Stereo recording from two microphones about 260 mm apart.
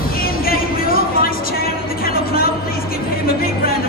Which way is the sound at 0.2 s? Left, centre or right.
Left.